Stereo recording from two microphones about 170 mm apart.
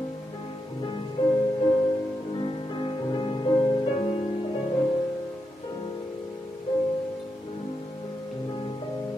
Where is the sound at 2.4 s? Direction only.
30° left (ahead or behind).